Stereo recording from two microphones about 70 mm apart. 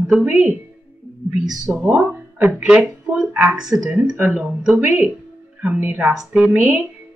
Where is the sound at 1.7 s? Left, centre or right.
Centre.